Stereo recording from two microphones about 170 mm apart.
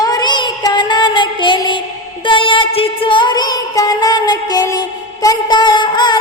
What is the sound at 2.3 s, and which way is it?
Music, 30° left (ahead or behind).